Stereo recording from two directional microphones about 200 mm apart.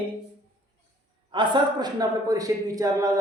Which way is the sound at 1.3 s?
25° right (ahead or behind).